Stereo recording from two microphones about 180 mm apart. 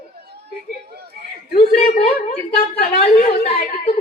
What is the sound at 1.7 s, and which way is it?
A woman's voice, 35° left (ahead or behind).